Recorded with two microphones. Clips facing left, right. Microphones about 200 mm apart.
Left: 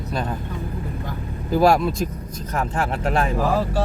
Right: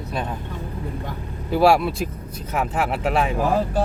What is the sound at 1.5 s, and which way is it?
Speech, 5° right (ahead or behind).